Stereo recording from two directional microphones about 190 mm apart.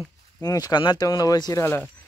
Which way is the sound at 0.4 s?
20° left (ahead or behind).